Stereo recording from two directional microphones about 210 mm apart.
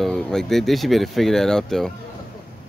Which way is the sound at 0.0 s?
Centre (ahead or behind).